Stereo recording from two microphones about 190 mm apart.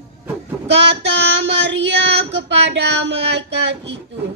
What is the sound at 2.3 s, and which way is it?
Music, 65° right (ahead or behind).